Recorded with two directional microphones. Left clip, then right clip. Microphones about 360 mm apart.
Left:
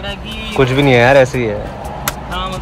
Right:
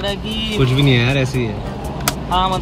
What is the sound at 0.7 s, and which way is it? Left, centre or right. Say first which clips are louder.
Speech: left 10 dB; centre.